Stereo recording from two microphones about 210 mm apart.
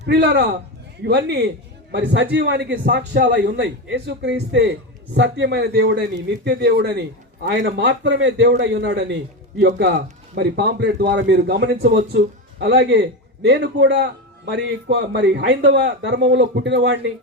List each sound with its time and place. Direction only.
0.0 s a man's voice: 55° right (ahead or behind)